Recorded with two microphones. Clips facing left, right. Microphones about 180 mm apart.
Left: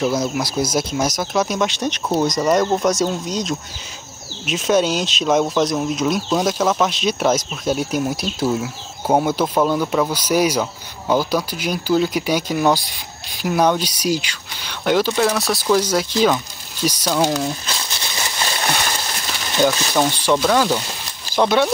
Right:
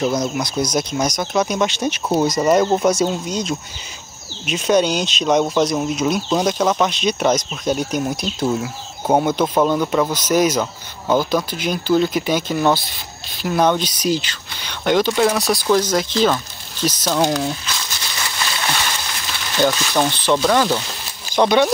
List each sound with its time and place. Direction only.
0.0 s speech: 5° left (ahead or behind)
17.6 s a sound: 30° left (ahead or behind)
19.5 s speech: 5° left (ahead or behind)